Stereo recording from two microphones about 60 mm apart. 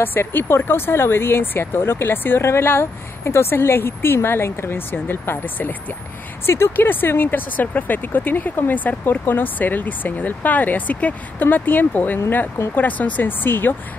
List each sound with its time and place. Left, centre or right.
0.0 s speech: left